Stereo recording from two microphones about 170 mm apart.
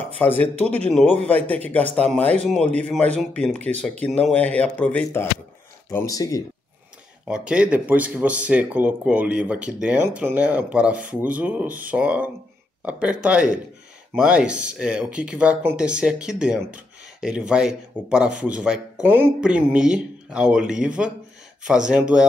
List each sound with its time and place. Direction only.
0.0 s speech: 10° left (ahead or behind)
7.2 s speech: 5° right (ahead or behind)